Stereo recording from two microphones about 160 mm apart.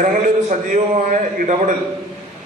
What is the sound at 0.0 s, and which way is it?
A man's voice, 55° right (ahead or behind).